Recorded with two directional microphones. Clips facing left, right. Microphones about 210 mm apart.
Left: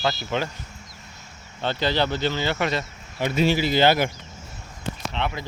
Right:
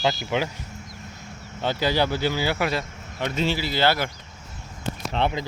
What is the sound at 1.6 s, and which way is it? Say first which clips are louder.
Speech: right 1 dB; 10° right (ahead or behind).